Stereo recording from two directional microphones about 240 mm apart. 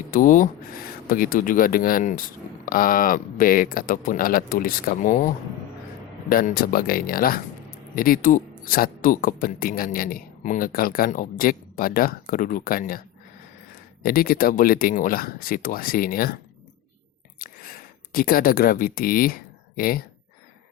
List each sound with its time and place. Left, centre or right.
0.1 s speech: left
14.0 s speech: left
17.4 s a sound: left